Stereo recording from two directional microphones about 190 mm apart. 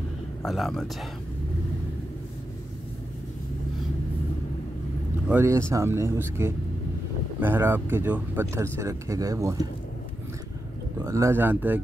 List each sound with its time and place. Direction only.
0.4 s speech: centre (ahead or behind)
5.3 s speech: 15° right (ahead or behind)
11.1 s speech: 15° right (ahead or behind)